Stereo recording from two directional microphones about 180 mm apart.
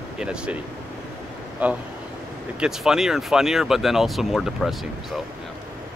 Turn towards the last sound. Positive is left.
turn(degrees=0)  # may be behind; listen again after turning